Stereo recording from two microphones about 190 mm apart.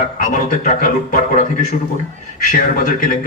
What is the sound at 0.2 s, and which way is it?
A man's voice, 40° left (ahead or behind).